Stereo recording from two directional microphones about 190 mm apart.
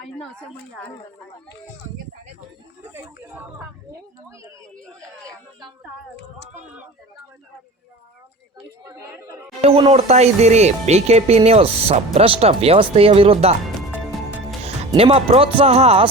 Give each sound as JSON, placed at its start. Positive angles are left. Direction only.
{"t": 4.9, "sound": "speech", "side_deg": -15}
{"t": 8.8, "sound": "speech", "side_deg": -15}
{"t": 9.6, "sound": "speech", "side_deg": -30}
{"t": 13.7, "sound": "music", "side_deg": 0}
{"t": 14.6, "sound": "speech", "side_deg": -30}